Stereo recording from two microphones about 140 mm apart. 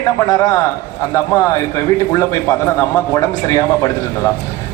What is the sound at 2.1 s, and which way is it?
Speech, 20° left (ahead or behind).